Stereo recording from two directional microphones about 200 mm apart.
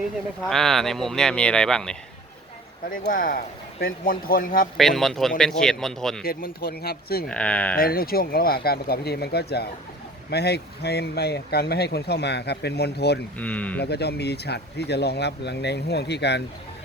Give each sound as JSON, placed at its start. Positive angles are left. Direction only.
{"t": 0.4, "sound": "speech", "side_deg": 0}
{"t": 2.9, "sound": "speech", "side_deg": 45}
{"t": 4.8, "sound": "speech", "side_deg": 0}
{"t": 6.2, "sound": "speech", "side_deg": 50}
{"t": 7.3, "sound": "speech", "side_deg": 5}
{"t": 7.8, "sound": "speech", "side_deg": 50}
{"t": 13.4, "sound": "speech", "side_deg": 5}
{"t": 13.7, "sound": "speech", "side_deg": 55}